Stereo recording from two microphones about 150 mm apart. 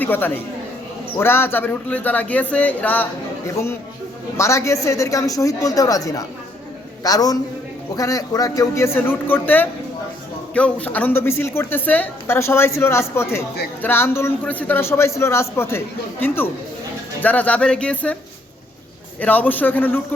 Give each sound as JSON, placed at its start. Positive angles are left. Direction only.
{"t": 0.0, "sound": "a man's voice", "side_deg": 15}
{"t": 19.2, "sound": "speech", "side_deg": 10}